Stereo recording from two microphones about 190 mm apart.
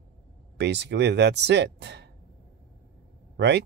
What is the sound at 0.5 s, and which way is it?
Speech, 65° right (ahead or behind).